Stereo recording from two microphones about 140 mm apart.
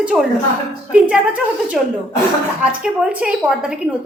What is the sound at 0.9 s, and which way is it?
A woman's voice, 10° right (ahead or behind).